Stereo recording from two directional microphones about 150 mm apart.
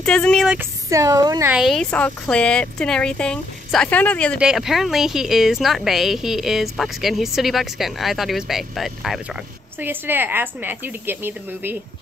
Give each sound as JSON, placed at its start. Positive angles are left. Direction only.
{"t": 0.0, "sound": "a woman's voice", "side_deg": 5}
{"t": 0.6, "sound": "speech", "side_deg": -20}
{"t": 1.5, "sound": "speech", "side_deg": 0}
{"t": 4.4, "sound": "a woman's voice", "side_deg": -5}
{"t": 9.8, "sound": "speech", "side_deg": -15}